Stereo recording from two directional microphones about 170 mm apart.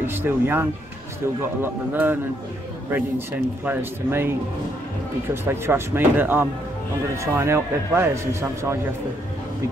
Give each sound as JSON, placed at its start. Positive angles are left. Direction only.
{"t": 0.0, "sound": "a man's voice", "side_deg": -10}
{"t": 5.3, "sound": "a man's voice", "side_deg": -15}